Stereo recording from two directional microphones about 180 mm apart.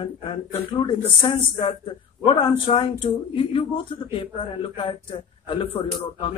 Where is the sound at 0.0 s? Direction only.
30° left (ahead or behind).